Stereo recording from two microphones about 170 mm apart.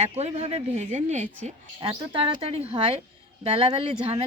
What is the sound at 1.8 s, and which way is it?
A woman's voice, 30° right (ahead or behind).